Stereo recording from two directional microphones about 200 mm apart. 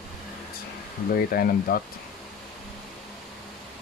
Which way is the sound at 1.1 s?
50° left (ahead or behind).